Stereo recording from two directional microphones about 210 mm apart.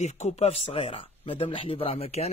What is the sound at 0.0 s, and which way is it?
Speech, 30° left (ahead or behind).